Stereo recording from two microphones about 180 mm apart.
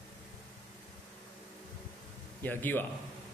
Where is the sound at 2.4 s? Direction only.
10° left (ahead or behind).